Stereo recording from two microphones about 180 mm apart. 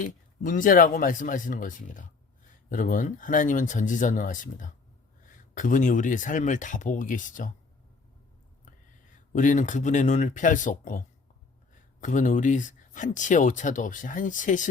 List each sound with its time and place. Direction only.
0.0 s speech: 45° left (ahead or behind)
9.3 s speech: 45° left (ahead or behind)